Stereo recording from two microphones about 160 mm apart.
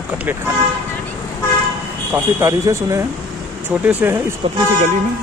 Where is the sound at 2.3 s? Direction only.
20° right (ahead or behind).